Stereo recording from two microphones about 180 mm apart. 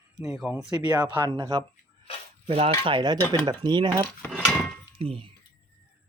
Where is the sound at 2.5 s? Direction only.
35° right (ahead or behind).